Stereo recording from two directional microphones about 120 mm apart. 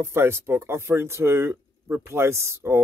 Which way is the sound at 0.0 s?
20° right (ahead or behind).